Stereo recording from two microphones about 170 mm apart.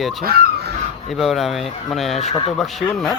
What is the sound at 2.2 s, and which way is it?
Speech, 40° left (ahead or behind).